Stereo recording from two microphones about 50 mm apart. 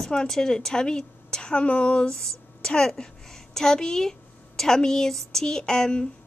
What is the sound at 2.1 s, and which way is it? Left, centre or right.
A woman's voice, centre.